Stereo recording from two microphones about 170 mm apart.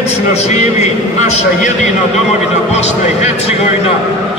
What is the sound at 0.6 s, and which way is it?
A man's voice, 40° left (ahead or behind).